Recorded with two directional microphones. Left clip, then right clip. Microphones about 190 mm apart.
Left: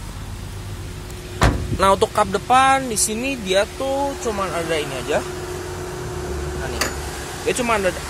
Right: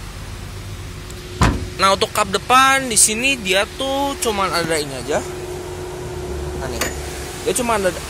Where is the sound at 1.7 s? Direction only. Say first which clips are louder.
Even; 20° left (ahead or behind).